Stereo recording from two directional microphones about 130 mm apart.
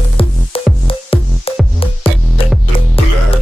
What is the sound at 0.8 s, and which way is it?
Music, 45° left (ahead or behind).